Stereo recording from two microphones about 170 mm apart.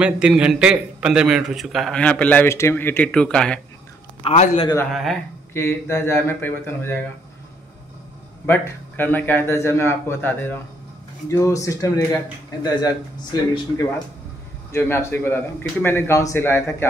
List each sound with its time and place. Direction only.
0.0 s a man's voice: 5° right (ahead or behind)
4.2 s a man's voice: 35° left (ahead or behind)
4.9 s a man's voice: centre (ahead or behind)
5.5 s a man's voice: 15° left (ahead or behind)
8.5 s a man's voice: 10° left (ahead or behind)